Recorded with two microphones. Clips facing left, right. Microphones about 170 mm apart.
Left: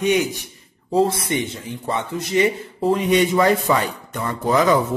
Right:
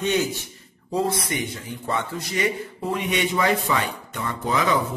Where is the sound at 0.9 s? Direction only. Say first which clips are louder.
Left 6 dB; 25° left (ahead or behind).